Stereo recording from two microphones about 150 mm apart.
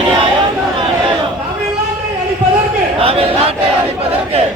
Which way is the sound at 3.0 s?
40° right (ahead or behind).